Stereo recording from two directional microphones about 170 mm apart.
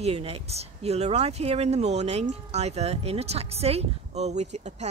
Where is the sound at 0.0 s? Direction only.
35° right (ahead or behind).